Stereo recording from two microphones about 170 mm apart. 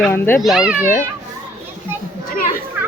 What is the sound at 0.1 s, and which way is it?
Speech, 15° left (ahead or behind).